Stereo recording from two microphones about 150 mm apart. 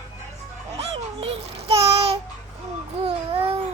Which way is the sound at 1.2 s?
40° right (ahead or behind).